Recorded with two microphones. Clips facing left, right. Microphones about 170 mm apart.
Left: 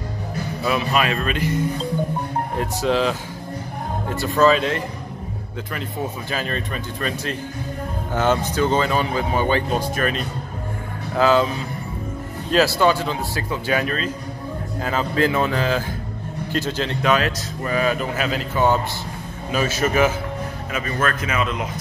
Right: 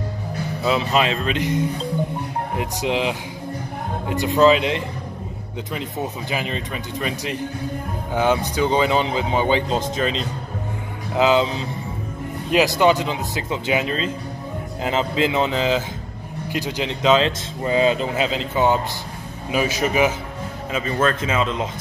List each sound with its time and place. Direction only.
0.7 s speech: 20° right (ahead or behind)
2.5 s speech: 15° right (ahead or behind)
6.3 s speech: 15° right (ahead or behind)